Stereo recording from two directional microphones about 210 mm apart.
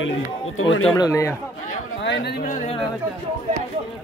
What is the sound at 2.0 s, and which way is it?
Chatter, 55° left (ahead or behind).